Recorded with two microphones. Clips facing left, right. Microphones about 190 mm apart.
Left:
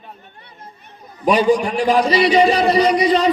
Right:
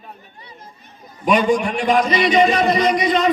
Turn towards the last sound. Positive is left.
turn(degrees=35)  # may be behind; listen again after turning